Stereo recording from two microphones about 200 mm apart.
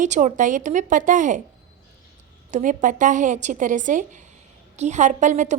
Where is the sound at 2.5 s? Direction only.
40° right (ahead or behind).